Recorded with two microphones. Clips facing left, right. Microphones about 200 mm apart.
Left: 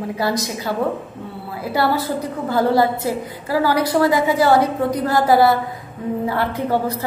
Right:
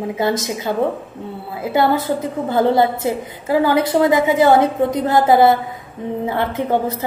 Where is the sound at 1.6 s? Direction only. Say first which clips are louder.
Right 3 dB; 20° right (ahead or behind).